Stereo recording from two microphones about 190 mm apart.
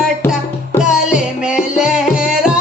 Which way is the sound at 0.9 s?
5° right (ahead or behind).